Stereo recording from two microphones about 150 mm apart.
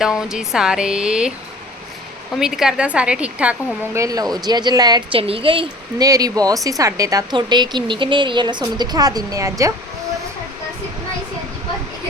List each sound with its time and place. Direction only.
0.0 s speech: 5° right (ahead or behind)
2.3 s a woman's voice: 5° right (ahead or behind)
3.9 s speech: 25° right (ahead or behind)
6.1 s speech: 25° right (ahead or behind)